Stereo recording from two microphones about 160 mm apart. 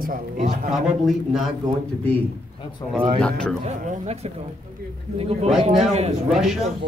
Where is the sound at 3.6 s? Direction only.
45° right (ahead or behind).